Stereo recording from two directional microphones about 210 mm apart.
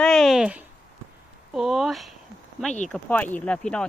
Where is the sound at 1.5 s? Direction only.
Centre (ahead or behind).